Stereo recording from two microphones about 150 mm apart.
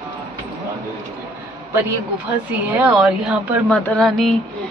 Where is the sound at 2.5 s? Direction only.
10° right (ahead or behind).